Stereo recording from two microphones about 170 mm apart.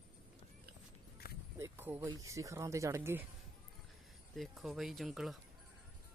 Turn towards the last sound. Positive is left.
turn(degrees=0)  # may be behind; listen again after turning